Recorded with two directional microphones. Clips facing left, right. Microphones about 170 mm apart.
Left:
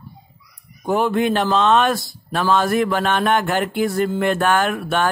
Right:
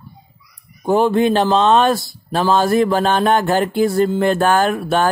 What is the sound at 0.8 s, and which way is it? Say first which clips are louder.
Speech: right 4 dB; 30° right (ahead or behind).